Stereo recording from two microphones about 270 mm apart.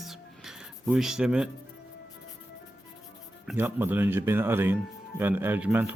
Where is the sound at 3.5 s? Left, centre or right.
Centre.